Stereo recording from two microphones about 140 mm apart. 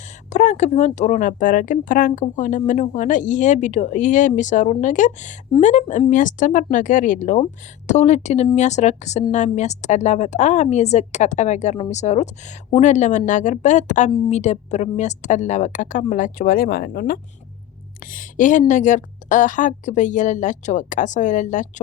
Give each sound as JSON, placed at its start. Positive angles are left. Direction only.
{"t": 0.3, "sound": "speech", "side_deg": 60}
{"t": 18.0, "sound": "speech", "side_deg": 75}